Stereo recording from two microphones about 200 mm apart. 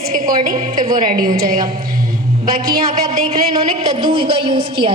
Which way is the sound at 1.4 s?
45° right (ahead or behind).